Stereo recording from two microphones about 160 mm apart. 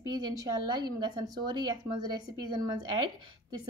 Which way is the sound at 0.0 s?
25° right (ahead or behind).